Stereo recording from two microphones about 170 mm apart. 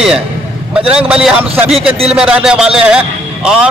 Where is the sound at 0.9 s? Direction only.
5° right (ahead or behind).